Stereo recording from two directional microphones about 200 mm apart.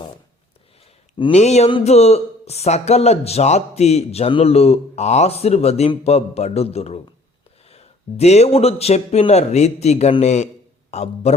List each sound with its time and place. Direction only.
1.2 s speech: 35° left (ahead or behind)